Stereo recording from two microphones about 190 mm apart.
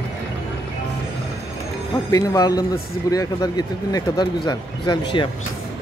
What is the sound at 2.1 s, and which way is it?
Speech, 20° left (ahead or behind).